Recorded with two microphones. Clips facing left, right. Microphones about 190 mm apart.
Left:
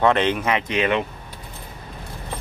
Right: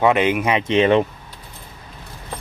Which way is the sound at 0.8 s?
35° right (ahead or behind).